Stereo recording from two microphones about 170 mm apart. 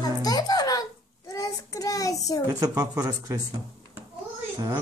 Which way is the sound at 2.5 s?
20° right (ahead or behind).